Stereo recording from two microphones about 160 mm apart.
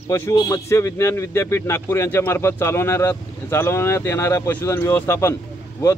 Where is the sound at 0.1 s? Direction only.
15° left (ahead or behind).